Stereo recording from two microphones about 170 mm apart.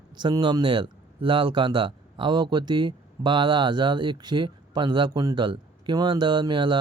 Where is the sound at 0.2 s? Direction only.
25° right (ahead or behind).